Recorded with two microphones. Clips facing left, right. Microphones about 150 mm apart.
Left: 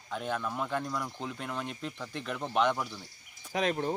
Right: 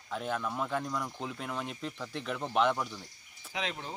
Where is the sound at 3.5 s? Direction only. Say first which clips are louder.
Left 8 dB; 50° left (ahead or behind).